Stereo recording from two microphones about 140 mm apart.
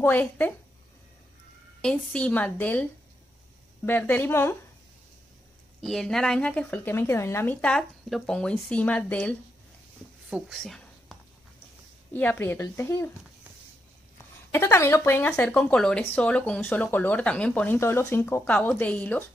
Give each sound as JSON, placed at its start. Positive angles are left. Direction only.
{"t": 0.0, "sound": "speech", "side_deg": 15}
{"t": 1.8, "sound": "speech", "side_deg": 5}
{"t": 5.8, "sound": "speech", "side_deg": 0}
{"t": 10.3, "sound": "a sound", "side_deg": 0}
{"t": 12.1, "sound": "speech", "side_deg": 15}
{"t": 14.5, "sound": "speech", "side_deg": 20}